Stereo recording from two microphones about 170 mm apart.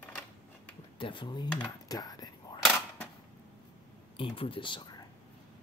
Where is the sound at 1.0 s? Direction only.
30° left (ahead or behind).